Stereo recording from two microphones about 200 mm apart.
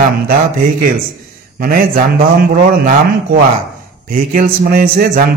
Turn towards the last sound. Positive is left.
turn(degrees=-45)  # may be behind; listen again after turning